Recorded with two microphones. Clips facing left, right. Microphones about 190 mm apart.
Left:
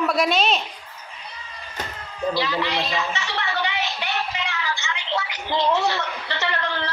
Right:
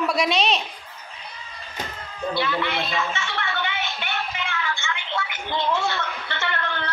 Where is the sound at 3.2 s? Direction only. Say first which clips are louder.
Left 2 dB; 35° left (ahead or behind).